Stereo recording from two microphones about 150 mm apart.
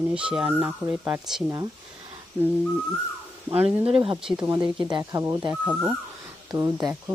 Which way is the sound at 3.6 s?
40° right (ahead or behind).